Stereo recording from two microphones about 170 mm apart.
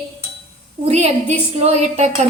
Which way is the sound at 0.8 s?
40° right (ahead or behind).